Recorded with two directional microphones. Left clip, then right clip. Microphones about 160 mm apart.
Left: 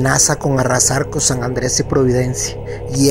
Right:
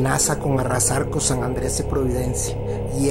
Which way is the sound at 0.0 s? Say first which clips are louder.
Left 6 dB; 35° left (ahead or behind).